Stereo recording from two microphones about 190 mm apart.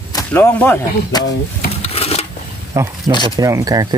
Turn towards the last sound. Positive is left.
turn(degrees=-20)  # may be behind; listen again after turning